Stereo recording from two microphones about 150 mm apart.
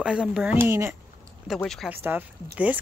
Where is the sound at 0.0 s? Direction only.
5° right (ahead or behind).